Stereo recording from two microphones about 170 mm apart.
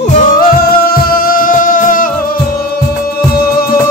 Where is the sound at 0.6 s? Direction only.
60° left (ahead or behind).